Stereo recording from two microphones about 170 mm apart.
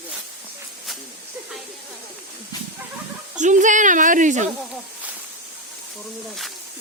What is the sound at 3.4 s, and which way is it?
Speech, 45° right (ahead or behind).